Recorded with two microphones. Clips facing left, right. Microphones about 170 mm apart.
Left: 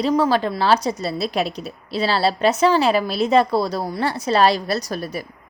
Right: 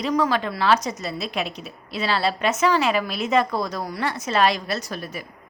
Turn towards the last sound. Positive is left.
turn(degrees=35)  # may be behind; listen again after turning